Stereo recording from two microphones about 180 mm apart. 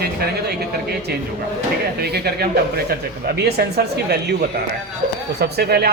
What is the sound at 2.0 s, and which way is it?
Speech, 65° right (ahead or behind).